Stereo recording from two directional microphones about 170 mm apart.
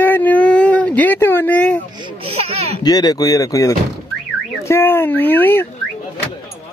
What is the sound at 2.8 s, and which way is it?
Speech, 25° left (ahead or behind).